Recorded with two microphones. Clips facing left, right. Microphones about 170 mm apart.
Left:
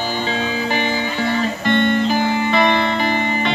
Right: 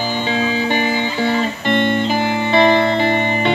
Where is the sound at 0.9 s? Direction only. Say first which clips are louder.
Right 2 dB; 25° right (ahead or behind).